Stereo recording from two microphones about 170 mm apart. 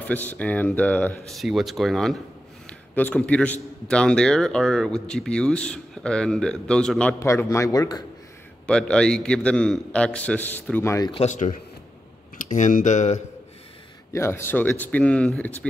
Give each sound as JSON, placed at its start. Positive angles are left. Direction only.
{"t": 0.0, "sound": "a man's voice", "side_deg": 10}
{"t": 2.6, "sound": "a sound", "side_deg": 10}
{"t": 3.9, "sound": "speech", "side_deg": 5}
{"t": 7.2, "sound": "a man's voice", "side_deg": 15}
{"t": 8.6, "sound": "a man's voice", "side_deg": 5}
{"t": 11.1, "sound": "speech", "side_deg": 40}
{"t": 14.1, "sound": "a man's voice", "side_deg": 15}